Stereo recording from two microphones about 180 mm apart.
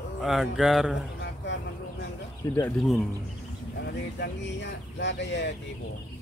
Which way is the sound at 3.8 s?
70° left (ahead or behind).